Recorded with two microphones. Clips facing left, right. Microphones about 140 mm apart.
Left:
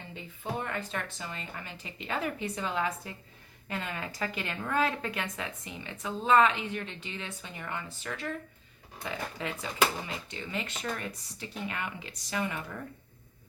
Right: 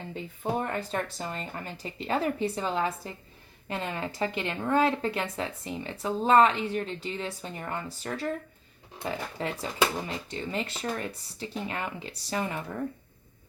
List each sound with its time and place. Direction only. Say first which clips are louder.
0.6 s speech: right 5 dB; 35° right (ahead or behind)